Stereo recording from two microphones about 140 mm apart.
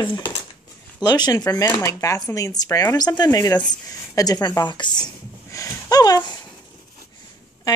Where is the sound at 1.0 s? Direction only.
30° left (ahead or behind).